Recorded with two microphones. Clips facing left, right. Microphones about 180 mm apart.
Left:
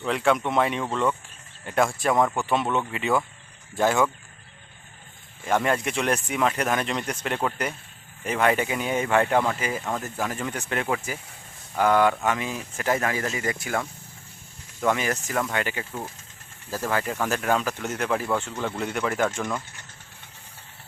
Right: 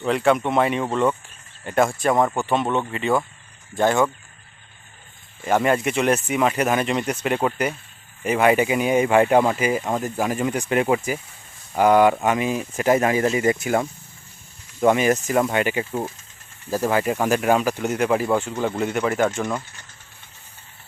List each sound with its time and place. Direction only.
0.0 s speech: centre (ahead or behind)
5.5 s speech: 5° right (ahead or behind)